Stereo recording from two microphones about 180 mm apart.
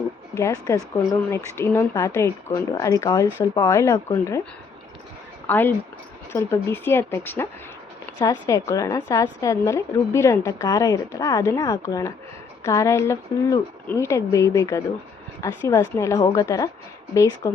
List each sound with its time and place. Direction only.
0.3 s a woman's voice: 20° left (ahead or behind)
5.5 s a woman's voice: 10° left (ahead or behind)